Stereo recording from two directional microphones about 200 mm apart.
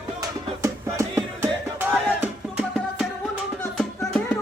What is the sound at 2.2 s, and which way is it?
Music, 5° right (ahead or behind).